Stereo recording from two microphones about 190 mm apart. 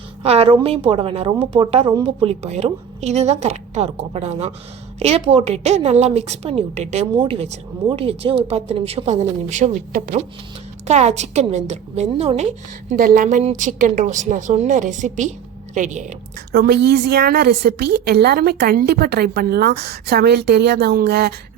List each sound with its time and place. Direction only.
0.2 s a woman's voice: 30° right (ahead or behind)
16.5 s a woman's voice: 55° right (ahead or behind)